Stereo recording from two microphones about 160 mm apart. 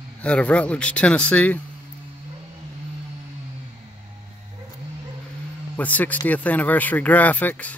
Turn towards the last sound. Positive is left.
turn(degrees=10)  # may be behind; listen again after turning